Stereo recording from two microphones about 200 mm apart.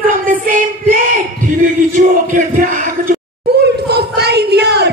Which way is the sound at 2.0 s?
40° right (ahead or behind).